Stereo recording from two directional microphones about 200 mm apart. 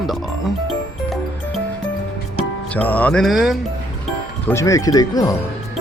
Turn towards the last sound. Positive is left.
turn(degrees=20)  # may be behind; listen again after turning